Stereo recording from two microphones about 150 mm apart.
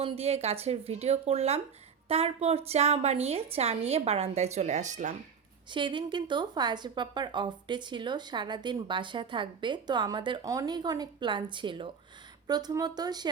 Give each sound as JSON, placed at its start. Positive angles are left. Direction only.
{"t": 0.0, "sound": "a woman's voice", "side_deg": -45}
{"t": 5.7, "sound": "a woman's voice", "side_deg": -30}